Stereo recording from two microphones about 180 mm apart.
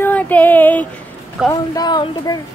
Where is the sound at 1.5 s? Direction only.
20° left (ahead or behind).